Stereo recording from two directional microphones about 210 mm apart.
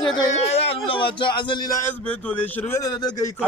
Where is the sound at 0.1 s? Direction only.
25° left (ahead or behind).